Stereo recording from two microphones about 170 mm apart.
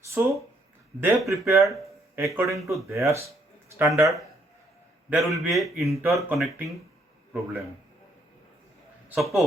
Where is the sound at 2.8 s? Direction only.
15° right (ahead or behind).